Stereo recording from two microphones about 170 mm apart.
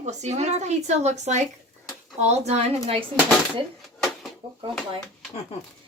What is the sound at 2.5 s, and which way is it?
Speech, 40° right (ahead or behind).